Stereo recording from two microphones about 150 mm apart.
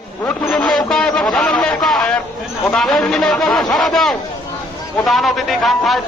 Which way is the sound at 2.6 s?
5° left (ahead or behind).